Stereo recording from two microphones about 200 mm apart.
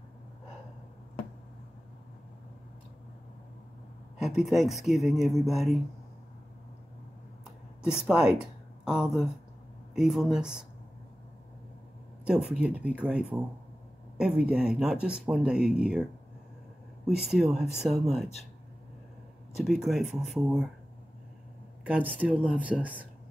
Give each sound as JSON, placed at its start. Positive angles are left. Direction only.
{"t": 4.2, "sound": "speech", "side_deg": 0}
{"t": 7.8, "sound": "speech", "side_deg": -5}
{"t": 12.3, "sound": "speech", "side_deg": -5}
{"t": 17.3, "sound": "speech", "side_deg": 0}
{"t": 19.5, "sound": "speech", "side_deg": 0}
{"t": 21.8, "sound": "speech", "side_deg": -5}